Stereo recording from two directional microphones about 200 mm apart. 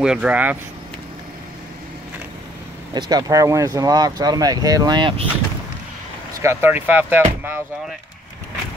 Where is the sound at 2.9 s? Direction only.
20° right (ahead or behind).